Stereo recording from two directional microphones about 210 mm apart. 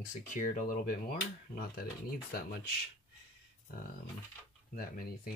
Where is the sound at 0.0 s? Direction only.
40° left (ahead or behind).